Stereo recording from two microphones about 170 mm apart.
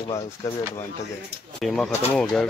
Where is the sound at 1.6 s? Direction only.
5° left (ahead or behind).